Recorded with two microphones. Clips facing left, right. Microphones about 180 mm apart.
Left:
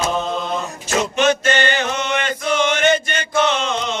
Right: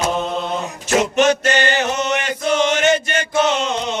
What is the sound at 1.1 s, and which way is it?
Mantra, 40° right (ahead or behind).